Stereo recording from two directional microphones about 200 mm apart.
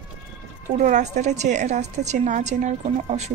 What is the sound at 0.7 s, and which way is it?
A woman's voice, 35° right (ahead or behind).